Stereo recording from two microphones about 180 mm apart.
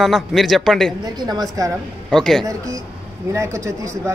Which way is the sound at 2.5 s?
15° right (ahead or behind).